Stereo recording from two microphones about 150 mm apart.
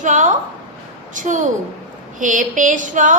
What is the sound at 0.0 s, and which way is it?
A woman's voice, 55° right (ahead or behind).